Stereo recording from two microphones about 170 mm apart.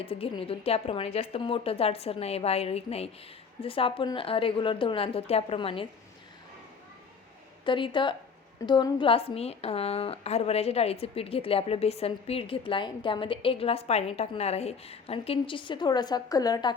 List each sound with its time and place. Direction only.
0.0 s a woman's voice: 35° left (ahead or behind)
7.6 s a woman's voice: 30° left (ahead or behind)